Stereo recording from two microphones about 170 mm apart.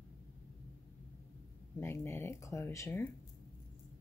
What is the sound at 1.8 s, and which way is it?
Speech, 15° left (ahead or behind).